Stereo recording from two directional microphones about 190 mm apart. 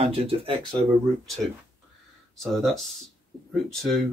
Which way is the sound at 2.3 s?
Centre (ahead or behind).